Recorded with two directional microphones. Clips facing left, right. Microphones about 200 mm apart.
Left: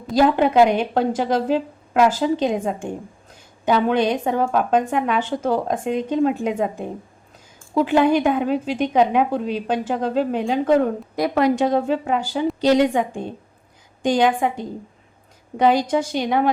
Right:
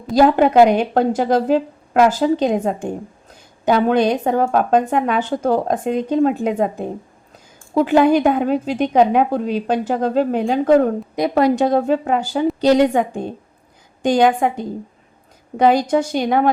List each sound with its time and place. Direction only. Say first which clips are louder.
0.1 s a woman's voice: right 3 dB; 45° right (ahead or behind)
15.5 s a woman's voice: right 3 dB; 45° right (ahead or behind)